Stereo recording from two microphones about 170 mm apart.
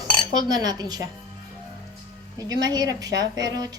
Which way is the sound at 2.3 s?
20° right (ahead or behind).